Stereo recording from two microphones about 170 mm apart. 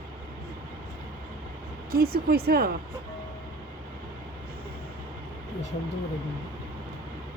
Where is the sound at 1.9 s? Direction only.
65° right (ahead or behind).